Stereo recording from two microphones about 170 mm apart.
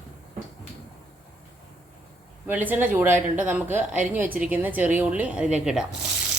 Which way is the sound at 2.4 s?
10° right (ahead or behind).